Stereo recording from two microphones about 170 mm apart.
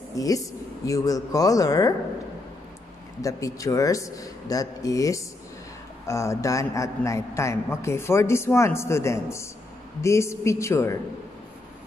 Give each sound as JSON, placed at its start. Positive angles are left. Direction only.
{"t": 0.1, "sound": "a man's voice", "side_deg": 20}
{"t": 3.2, "sound": "a man's voice", "side_deg": 20}